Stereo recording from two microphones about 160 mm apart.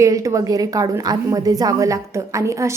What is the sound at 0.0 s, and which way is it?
A woman's voice, 20° right (ahead or behind).